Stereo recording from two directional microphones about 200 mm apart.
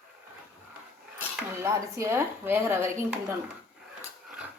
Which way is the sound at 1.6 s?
15° right (ahead or behind).